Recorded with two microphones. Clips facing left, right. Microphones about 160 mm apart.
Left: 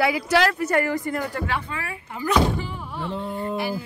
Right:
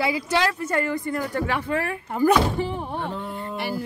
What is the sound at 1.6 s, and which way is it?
Speech, 50° right (ahead or behind).